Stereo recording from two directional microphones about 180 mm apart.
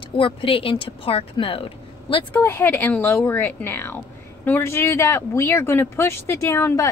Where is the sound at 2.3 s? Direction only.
10° left (ahead or behind).